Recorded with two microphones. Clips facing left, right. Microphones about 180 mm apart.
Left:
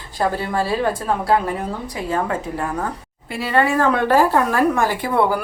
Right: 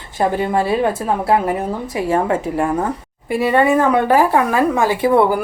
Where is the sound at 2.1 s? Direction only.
25° right (ahead or behind).